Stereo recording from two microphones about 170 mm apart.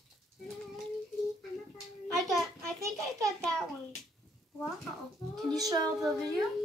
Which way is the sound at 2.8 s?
20° right (ahead or behind).